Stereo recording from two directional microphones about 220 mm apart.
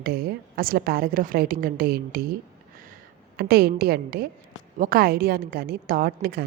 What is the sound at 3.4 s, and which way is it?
A woman's voice, 45° right (ahead or behind).